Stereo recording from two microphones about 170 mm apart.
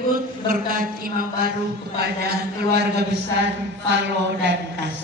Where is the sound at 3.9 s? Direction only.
90° right.